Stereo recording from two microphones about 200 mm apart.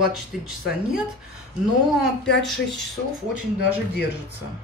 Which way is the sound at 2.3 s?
60° left (ahead or behind).